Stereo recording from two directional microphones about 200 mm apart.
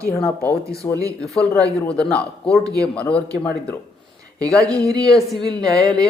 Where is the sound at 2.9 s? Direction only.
5° left (ahead or behind).